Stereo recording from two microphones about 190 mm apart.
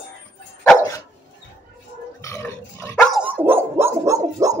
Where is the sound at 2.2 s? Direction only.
15° left (ahead or behind).